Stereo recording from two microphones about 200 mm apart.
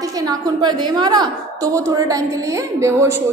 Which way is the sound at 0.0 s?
20° right (ahead or behind).